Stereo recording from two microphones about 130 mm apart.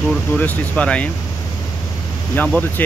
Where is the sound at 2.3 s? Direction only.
10° left (ahead or behind).